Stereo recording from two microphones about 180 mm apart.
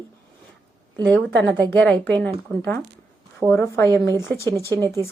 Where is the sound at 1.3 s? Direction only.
80° right.